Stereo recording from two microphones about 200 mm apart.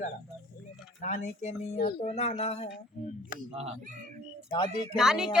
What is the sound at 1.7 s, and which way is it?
Speech, 50° left (ahead or behind).